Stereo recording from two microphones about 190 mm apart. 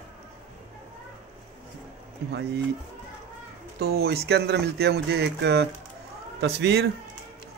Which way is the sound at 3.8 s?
55° right (ahead or behind).